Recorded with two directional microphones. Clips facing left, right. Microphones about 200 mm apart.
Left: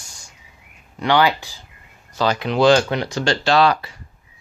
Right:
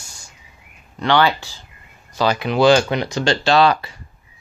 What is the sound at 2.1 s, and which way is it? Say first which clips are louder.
Speech: right 1 dB; 10° right (ahead or behind).